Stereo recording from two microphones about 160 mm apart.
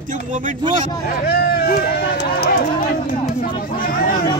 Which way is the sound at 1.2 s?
80° left.